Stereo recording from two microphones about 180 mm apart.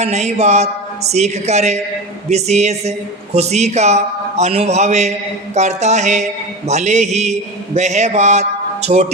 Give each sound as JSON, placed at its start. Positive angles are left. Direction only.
{"t": 0.0, "sound": "a man's voice", "side_deg": -40}